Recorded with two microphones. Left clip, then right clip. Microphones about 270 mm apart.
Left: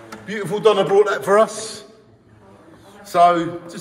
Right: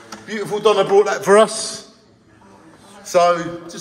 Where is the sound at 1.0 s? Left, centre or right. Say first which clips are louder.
Right 2 dB; right.